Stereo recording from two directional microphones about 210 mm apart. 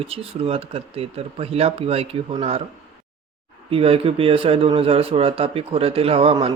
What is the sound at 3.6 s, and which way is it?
Speech, 25° right (ahead or behind).